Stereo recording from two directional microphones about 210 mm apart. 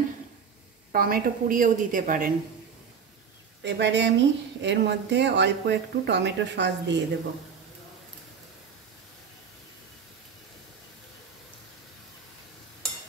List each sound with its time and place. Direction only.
0.9 s a woman's voice: 45° right (ahead or behind)
3.6 s speech: 55° right (ahead or behind)